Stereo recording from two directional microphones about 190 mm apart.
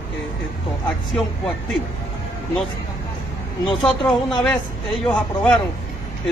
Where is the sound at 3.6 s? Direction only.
25° left (ahead or behind).